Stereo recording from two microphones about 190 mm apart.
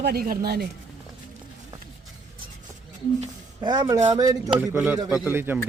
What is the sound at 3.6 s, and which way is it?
Speech, 20° right (ahead or behind).